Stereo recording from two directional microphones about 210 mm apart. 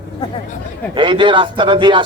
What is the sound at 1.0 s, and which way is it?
A man's voice, 20° right (ahead or behind).